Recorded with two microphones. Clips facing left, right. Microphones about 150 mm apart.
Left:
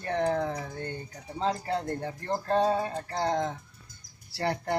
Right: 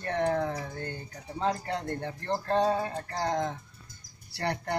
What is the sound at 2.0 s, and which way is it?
Speech, 10° left (ahead or behind).